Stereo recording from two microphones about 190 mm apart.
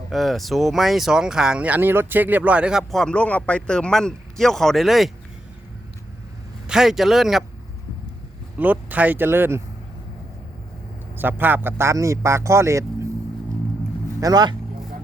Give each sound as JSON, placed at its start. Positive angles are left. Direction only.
{"t": 0.1, "sound": "speech", "side_deg": 0}
{"t": 6.7, "sound": "speech", "side_deg": 0}
{"t": 8.5, "sound": "speech", "side_deg": -10}
{"t": 11.2, "sound": "speech", "side_deg": -10}
{"t": 14.2, "sound": "a man's voice", "side_deg": -20}